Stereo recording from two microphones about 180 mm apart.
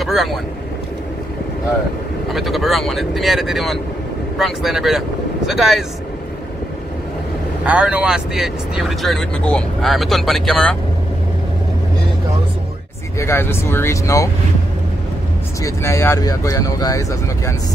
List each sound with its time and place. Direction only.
0.0 s speech: centre (ahead or behind)
2.3 s speech: centre (ahead or behind)
7.6 s speech: 5° right (ahead or behind)
13.2 s speech: 15° left (ahead or behind)
15.6 s speech: 15° left (ahead or behind)